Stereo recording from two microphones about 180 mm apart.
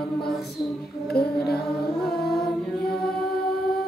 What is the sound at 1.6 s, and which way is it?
Music, centre (ahead or behind).